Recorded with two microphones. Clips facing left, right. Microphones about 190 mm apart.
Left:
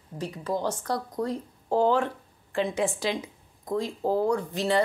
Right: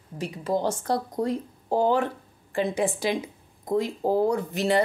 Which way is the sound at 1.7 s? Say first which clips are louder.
Even; 10° right (ahead or behind).